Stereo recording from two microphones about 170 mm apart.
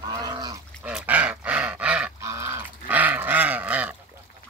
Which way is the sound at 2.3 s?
15° right (ahead or behind).